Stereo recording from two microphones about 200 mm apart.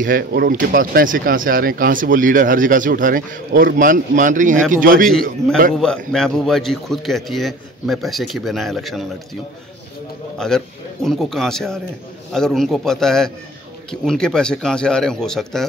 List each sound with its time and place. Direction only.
0.0 s speech: 50° right (ahead or behind)
5.7 s a man's voice: 5° left (ahead or behind)